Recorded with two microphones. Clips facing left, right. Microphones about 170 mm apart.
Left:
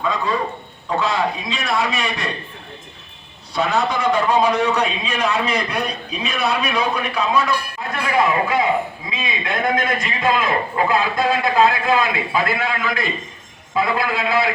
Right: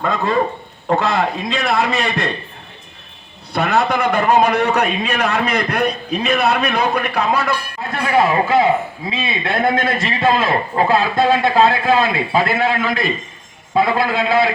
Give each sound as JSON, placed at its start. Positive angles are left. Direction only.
{"t": 0.0, "sound": "a man's voice", "side_deg": -55}
{"t": 3.5, "sound": "a man's voice", "side_deg": -60}
{"t": 8.2, "sound": "a man's voice", "side_deg": -30}